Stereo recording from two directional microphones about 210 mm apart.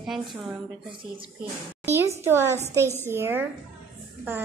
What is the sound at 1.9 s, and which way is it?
A woman's voice, 10° right (ahead or behind).